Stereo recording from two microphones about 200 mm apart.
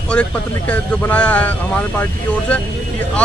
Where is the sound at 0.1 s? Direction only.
5° left (ahead or behind).